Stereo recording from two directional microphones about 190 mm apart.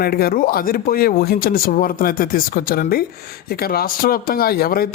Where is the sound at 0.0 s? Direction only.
55° left (ahead or behind).